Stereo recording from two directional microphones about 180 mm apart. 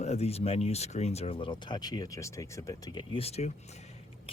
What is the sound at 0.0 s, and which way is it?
Speech, 35° left (ahead or behind).